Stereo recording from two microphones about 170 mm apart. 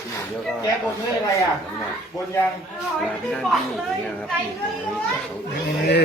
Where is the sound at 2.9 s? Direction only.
Centre (ahead or behind).